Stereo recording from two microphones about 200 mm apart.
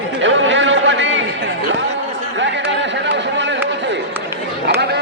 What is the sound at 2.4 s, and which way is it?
Chatter, 65° right (ahead or behind).